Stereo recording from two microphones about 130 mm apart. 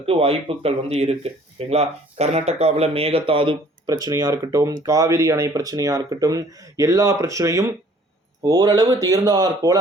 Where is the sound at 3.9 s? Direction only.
30° right (ahead or behind).